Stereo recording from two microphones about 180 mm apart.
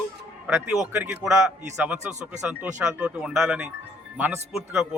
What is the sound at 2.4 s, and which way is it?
A man's voice, 5° right (ahead or behind).